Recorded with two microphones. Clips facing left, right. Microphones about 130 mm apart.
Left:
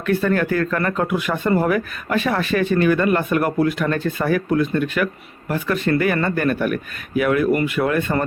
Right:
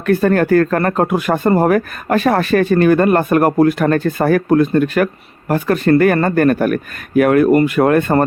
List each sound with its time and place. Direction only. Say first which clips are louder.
0.0 s speech: right 6 dB; 45° right (ahead or behind)